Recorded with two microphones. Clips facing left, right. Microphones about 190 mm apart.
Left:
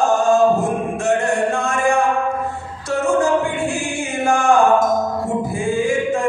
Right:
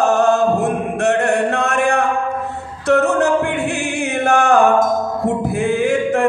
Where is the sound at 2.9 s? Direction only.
65° right (ahead or behind).